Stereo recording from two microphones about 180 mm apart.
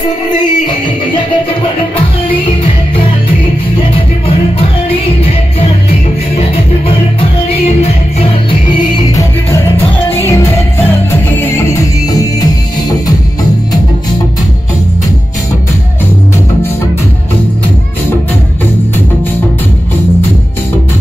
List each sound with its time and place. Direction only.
7.2 s music: 30° left (ahead or behind)
9.9 s music: 10° left (ahead or behind)